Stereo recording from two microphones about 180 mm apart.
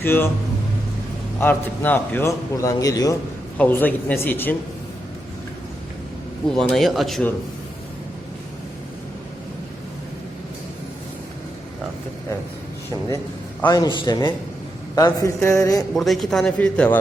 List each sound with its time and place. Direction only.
0.0 s a man's voice: 10° left (ahead or behind)
1.4 s a man's voice: 10° left (ahead or behind)
6.6 s a man's voice: centre (ahead or behind)
13.7 s a man's voice: 25° left (ahead or behind)
16.0 s a man's voice: centre (ahead or behind)